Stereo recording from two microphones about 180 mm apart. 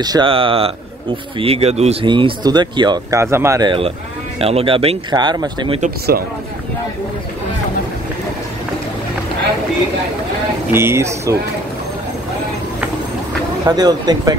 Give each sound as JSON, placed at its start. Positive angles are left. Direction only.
{"t": 0.0, "sound": "speech", "side_deg": -25}
{"t": 10.7, "sound": "speech", "side_deg": -15}
{"t": 13.7, "sound": "speech", "side_deg": -20}